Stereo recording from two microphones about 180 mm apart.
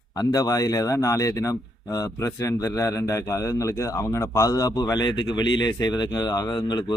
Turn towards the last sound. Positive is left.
turn(degrees=25)  # may be behind; listen again after turning